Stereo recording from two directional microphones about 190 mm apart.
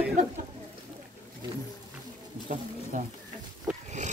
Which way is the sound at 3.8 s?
40° right (ahead or behind).